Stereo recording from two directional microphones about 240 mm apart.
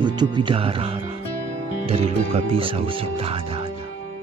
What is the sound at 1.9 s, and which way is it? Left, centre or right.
Speech, right.